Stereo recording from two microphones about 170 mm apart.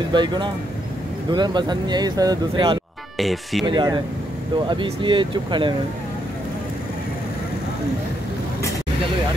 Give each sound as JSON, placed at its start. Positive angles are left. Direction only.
{"t": 0.1, "sound": "speech", "side_deg": -25}
{"t": 3.2, "sound": "speech", "side_deg": 0}
{"t": 3.6, "sound": "speech", "side_deg": -25}